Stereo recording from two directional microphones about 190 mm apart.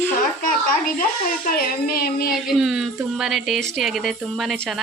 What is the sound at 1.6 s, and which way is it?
Baby cry, 50° left (ahead or behind).